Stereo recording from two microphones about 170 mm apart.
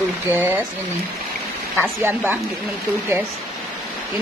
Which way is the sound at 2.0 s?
10° right (ahead or behind).